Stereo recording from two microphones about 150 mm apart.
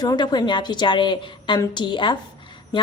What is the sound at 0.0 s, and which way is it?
Speech, 25° left (ahead or behind).